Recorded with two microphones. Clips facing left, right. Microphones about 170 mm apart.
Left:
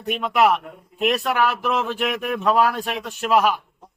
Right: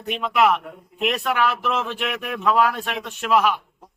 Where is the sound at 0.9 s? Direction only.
40° left (ahead or behind).